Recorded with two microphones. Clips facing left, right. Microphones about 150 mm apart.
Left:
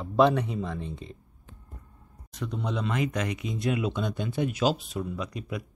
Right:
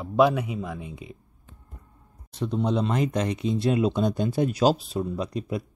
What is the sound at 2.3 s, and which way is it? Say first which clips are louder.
Speech: right 7 dB; 30° right (ahead or behind).